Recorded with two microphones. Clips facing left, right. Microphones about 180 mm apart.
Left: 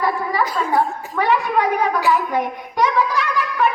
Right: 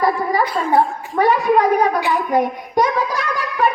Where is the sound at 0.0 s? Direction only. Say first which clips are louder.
Right 3 dB; 40° right (ahead or behind).